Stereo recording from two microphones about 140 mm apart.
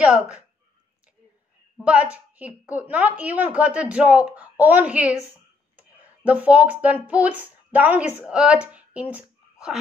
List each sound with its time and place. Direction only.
0.0 s speech: 5° right (ahead or behind)
1.8 s speech: 10° right (ahead or behind)